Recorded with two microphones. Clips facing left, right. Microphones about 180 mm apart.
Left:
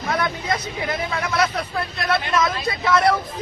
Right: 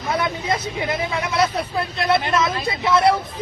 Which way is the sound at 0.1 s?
25° right (ahead or behind).